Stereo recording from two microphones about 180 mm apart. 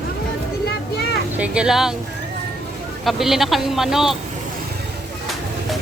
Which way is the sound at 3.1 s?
Centre (ahead or behind).